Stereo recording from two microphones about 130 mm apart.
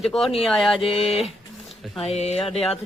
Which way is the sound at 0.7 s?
45° left (ahead or behind).